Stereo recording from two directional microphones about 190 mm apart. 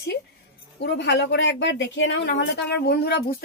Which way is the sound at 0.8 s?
65° left (ahead or behind).